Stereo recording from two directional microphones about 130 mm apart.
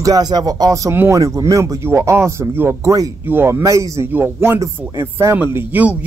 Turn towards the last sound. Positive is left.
turn(degrees=-15)  # may be behind; listen again after turning